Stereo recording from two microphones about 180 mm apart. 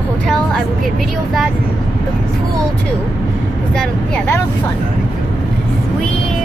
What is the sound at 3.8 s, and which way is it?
Speech, 10° left (ahead or behind).